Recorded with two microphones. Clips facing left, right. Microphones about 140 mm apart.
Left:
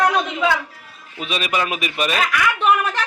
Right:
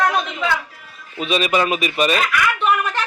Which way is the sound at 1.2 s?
Centre (ahead or behind).